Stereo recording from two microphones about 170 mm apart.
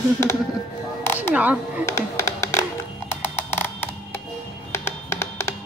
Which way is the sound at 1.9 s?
15° left (ahead or behind).